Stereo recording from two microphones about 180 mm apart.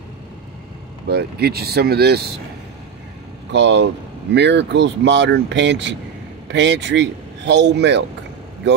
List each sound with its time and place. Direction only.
1.0 s speech: 60° right (ahead or behind)
3.5 s speech: 75° right (ahead or behind)